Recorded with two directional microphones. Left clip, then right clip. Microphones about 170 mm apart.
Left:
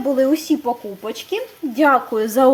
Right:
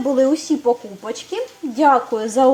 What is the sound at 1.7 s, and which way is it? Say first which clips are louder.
Speech: even; 15° left (ahead or behind).